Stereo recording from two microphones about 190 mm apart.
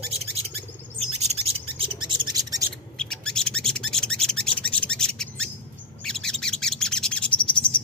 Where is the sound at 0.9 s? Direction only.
35° right (ahead or behind).